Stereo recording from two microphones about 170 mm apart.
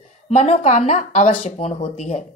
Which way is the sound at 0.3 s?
40° left (ahead or behind).